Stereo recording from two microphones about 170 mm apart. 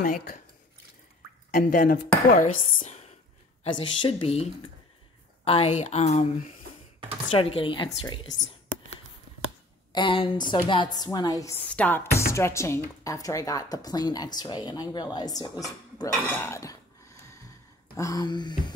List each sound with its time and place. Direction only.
1.5 s speech: 55° left (ahead or behind)
3.6 s a woman's voice: 30° left (ahead or behind)
9.9 s a woman's voice: 30° left (ahead or behind)
16.3 s a sound: 15° left (ahead or behind)
17.9 s a woman's voice: 20° left (ahead or behind)